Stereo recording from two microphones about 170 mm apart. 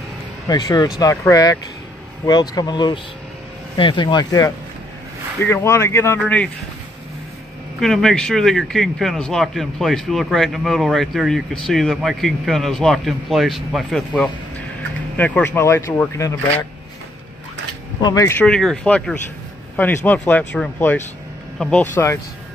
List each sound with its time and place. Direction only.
0.5 s speech: 20° left (ahead or behind)
7.8 s speech: centre (ahead or behind)
18.0 s speech: 20° left (ahead or behind)
18.4 s speech: centre (ahead or behind)
21.9 s speech: 15° left (ahead or behind)